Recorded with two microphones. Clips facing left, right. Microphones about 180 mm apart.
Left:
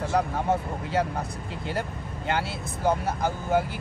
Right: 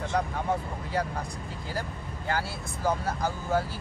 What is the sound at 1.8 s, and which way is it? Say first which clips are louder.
Speech: left 3 dB; 25° left (ahead or behind).